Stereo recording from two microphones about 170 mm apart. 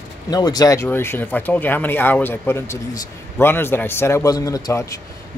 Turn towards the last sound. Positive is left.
turn(degrees=20)  # may be behind; listen again after turning